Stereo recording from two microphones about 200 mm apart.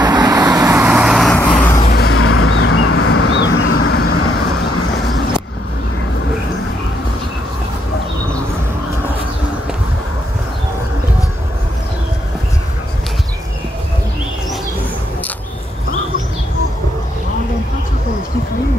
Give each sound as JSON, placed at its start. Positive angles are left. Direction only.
{"t": 0.0, "sound": "vehicle", "side_deg": -20}
{"t": 1.3, "sound": "vehicle", "side_deg": 10}
{"t": 1.9, "sound": "music", "side_deg": 50}
{"t": 2.1, "sound": "vehicle", "side_deg": 90}